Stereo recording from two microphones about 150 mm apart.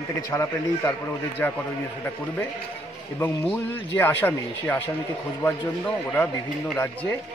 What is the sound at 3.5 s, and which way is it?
Speech, 15° left (ahead or behind).